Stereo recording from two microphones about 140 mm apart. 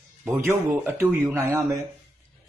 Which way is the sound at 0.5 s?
15° right (ahead or behind).